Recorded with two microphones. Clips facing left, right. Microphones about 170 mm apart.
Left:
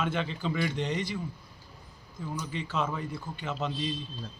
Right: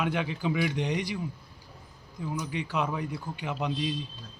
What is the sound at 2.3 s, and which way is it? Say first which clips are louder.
A man's voice: right 2 dB; 10° right (ahead or behind).